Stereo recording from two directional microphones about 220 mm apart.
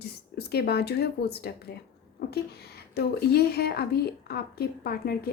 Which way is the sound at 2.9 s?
45° left (ahead or behind).